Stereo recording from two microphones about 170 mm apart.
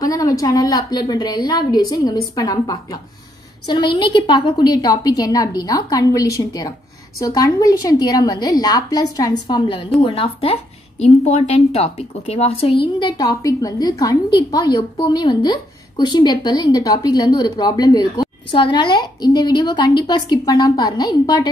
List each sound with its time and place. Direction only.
0.0 s a woman's voice: 20° left (ahead or behind)
13.0 s a woman's voice: 25° left (ahead or behind)